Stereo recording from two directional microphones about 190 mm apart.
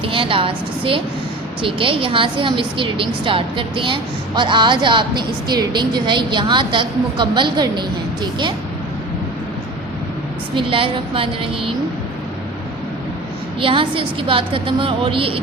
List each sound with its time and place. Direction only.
0.0 s a woman's voice: 30° right (ahead or behind)
10.5 s a woman's voice: 25° right (ahead or behind)
13.6 s a woman's voice: 25° right (ahead or behind)